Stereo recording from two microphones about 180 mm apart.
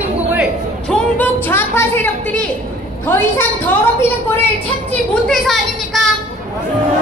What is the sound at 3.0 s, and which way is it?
A child's voice, 10° left (ahead or behind).